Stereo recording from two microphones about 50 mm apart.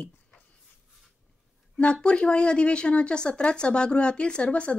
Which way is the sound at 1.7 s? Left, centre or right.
Left.